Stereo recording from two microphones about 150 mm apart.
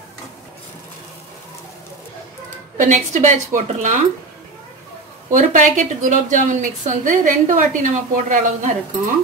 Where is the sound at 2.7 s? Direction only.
55° right (ahead or behind).